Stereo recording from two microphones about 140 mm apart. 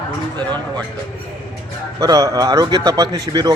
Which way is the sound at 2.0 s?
25° right (ahead or behind).